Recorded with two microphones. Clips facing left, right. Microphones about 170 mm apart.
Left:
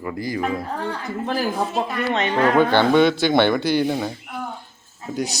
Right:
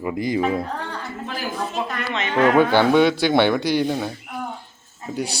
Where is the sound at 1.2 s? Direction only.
40° left (ahead or behind).